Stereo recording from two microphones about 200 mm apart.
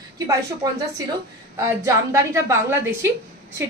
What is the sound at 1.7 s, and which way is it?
A woman's voice, 15° right (ahead or behind).